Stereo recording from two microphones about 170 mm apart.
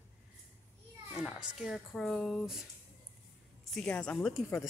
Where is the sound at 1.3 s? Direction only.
5° right (ahead or behind).